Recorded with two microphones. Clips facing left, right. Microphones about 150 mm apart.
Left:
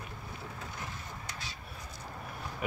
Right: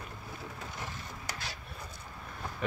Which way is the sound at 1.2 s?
80° right.